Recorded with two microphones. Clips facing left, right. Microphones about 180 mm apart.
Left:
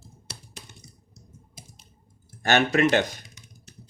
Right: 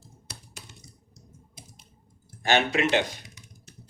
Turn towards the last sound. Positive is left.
turn(degrees=45)  # may be behind; listen again after turning